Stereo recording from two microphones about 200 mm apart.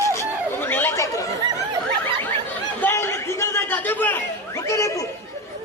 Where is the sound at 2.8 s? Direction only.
10° left (ahead or behind).